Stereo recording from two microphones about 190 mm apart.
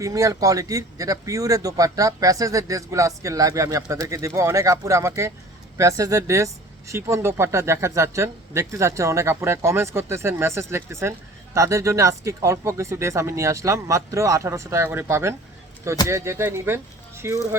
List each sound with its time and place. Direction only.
0.0 s speech: 15° right (ahead or behind)